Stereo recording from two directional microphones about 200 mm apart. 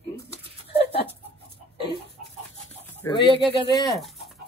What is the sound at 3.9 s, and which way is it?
Bird, centre (ahead or behind).